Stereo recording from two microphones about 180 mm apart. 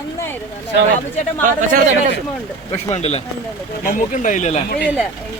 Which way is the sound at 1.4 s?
45° right (ahead or behind).